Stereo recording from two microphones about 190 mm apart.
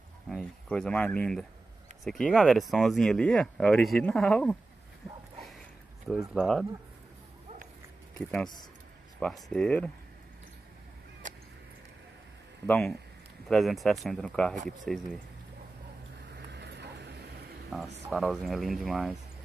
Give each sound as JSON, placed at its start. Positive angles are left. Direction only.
{"t": 0.3, "sound": "speech", "side_deg": 5}
{"t": 6.3, "sound": "speech", "side_deg": 0}
{"t": 9.2, "sound": "speech", "side_deg": 5}
{"t": 12.6, "sound": "speech", "side_deg": 5}
{"t": 16.5, "sound": "vehicle", "side_deg": -60}
{"t": 17.6, "sound": "speech", "side_deg": 0}